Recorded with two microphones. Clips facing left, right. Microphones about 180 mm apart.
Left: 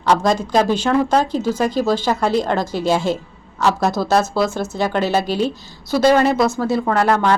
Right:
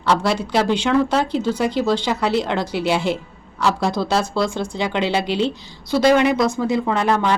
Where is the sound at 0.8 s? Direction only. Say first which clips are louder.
Left 1 dB; 45° left (ahead or behind).